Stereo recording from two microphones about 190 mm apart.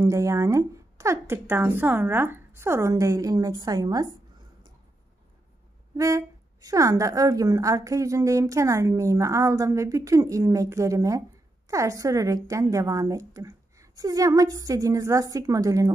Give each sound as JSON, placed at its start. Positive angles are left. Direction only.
{"t": 0.0, "sound": "a woman's voice", "side_deg": -15}
{"t": 5.9, "sound": "a woman's voice", "side_deg": -15}